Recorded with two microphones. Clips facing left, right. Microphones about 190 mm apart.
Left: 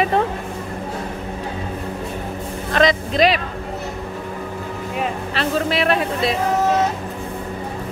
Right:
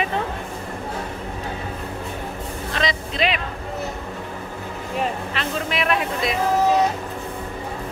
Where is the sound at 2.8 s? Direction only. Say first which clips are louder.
Left 8 dB; 45° left (ahead or behind).